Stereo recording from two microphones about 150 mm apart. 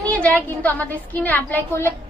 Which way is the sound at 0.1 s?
10° left (ahead or behind).